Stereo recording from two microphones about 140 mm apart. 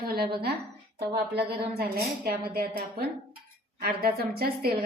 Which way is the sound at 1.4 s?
90° right.